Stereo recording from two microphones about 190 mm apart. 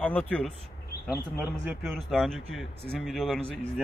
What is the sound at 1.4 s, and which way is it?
A man's voice, centre (ahead or behind).